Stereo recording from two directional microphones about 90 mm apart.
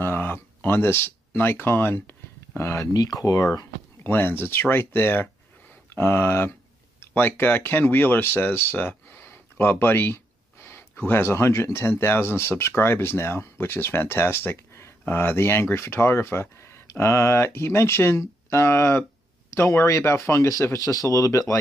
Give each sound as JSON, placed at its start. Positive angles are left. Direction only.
{"t": 0.0, "sound": "speech", "side_deg": 25}
{"t": 2.9, "sound": "speech", "side_deg": 45}
{"t": 4.0, "sound": "speech", "side_deg": 25}